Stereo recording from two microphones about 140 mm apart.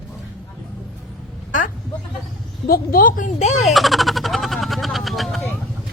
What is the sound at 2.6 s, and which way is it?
A woman's voice, 90° left.